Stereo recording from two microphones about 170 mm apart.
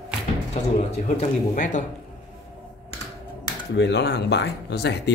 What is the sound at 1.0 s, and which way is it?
Speech, 45° left (ahead or behind).